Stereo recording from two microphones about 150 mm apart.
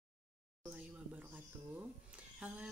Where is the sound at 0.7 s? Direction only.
10° right (ahead or behind).